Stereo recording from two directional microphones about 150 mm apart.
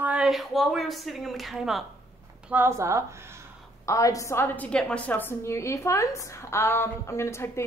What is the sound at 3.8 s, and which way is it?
A woman's voice, 20° left (ahead or behind).